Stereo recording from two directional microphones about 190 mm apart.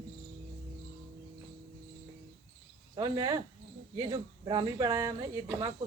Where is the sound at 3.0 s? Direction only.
20° right (ahead or behind).